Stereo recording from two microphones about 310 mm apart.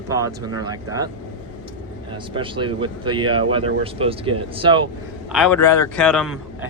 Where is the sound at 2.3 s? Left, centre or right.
Centre.